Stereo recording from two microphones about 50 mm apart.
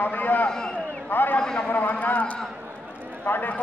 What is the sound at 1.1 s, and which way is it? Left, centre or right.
Speech, left.